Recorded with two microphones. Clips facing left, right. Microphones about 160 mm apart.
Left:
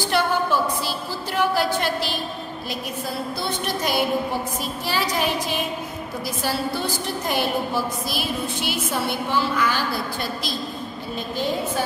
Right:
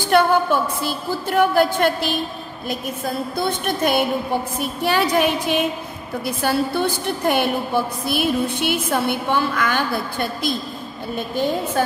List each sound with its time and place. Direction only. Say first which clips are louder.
0.1 s a woman's voice: right 6 dB; 50° right (ahead or behind)